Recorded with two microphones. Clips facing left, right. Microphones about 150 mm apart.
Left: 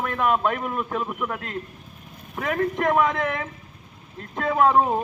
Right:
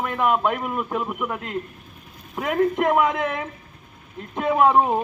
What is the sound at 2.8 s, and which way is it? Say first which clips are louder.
Speech: right 1 dB; 5° right (ahead or behind).